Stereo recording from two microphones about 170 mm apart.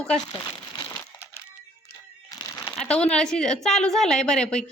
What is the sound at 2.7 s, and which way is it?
A woman's voice, 5° left (ahead or behind).